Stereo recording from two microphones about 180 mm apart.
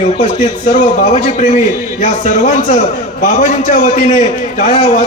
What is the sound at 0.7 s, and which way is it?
A man's voice, 40° left (ahead or behind).